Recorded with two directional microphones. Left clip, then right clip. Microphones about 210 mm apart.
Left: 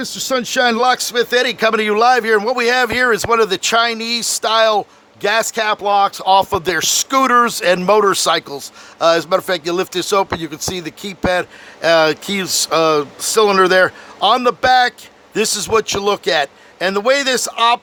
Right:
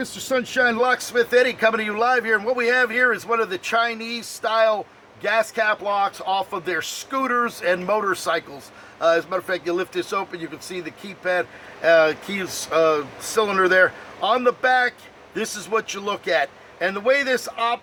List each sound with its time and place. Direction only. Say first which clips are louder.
0.0 s speech: left 5 dB; 50° left (ahead or behind)